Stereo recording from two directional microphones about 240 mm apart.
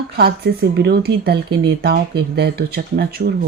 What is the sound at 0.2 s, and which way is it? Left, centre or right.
Speech, right.